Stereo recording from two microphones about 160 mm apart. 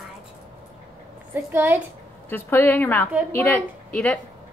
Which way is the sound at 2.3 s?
10° left (ahead or behind).